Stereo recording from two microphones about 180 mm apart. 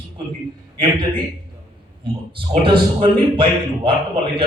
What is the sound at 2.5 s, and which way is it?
A man's voice, 30° right (ahead or behind).